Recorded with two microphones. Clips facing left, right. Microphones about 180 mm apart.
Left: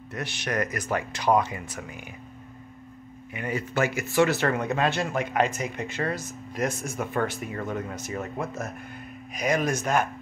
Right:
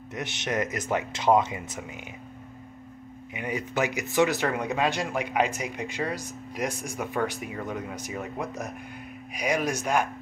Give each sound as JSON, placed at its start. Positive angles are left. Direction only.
{"t": 0.1, "sound": "speech", "side_deg": -20}
{"t": 3.3, "sound": "speech", "side_deg": -15}